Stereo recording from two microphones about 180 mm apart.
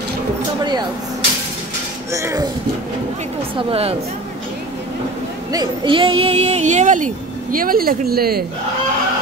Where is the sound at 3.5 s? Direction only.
35° right (ahead or behind).